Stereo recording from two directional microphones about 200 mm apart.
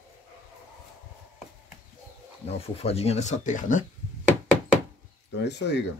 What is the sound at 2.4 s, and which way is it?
Speech, 30° left (ahead or behind).